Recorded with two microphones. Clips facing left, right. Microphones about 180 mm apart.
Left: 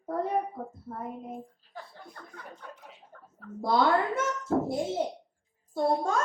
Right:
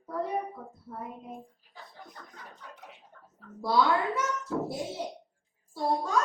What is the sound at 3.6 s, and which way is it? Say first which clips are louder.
A child's voice: left 1 dB; 50° left (ahead or behind).